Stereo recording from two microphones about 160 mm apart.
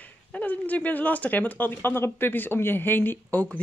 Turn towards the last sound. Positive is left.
turn(degrees=10)  # may be behind; listen again after turning